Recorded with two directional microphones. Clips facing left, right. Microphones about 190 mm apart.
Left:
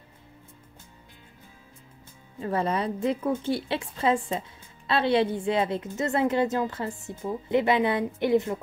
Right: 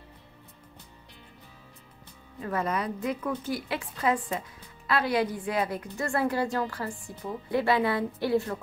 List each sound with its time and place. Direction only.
2.4 s a woman's voice: 30° left (ahead or behind)